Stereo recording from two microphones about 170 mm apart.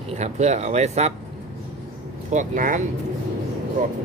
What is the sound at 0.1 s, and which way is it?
Speech, 45° right (ahead or behind).